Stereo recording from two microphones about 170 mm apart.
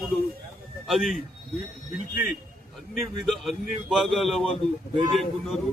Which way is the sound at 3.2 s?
Centre (ahead or behind).